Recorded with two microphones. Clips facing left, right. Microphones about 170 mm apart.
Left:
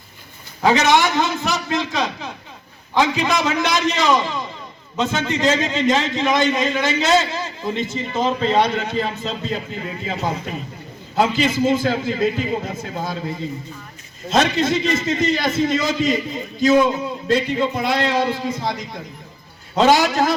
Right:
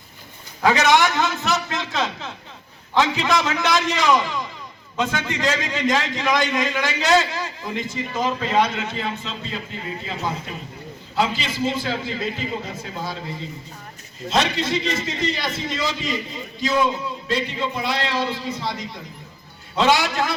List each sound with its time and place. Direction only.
0.6 s a man's voice: 20° left (ahead or behind); by 9.6 s 40° left (ahead or behind)
11.1 s a man's voice: 50° left (ahead or behind)